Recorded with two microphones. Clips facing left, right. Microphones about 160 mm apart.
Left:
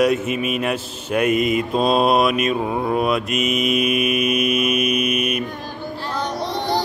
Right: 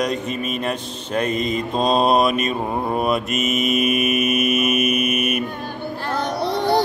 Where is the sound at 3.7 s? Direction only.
50° right (ahead or behind).